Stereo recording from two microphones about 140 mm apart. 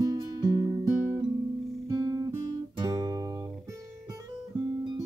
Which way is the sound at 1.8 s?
25° right (ahead or behind).